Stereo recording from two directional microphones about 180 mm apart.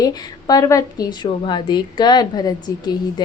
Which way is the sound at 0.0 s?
20° left (ahead or behind).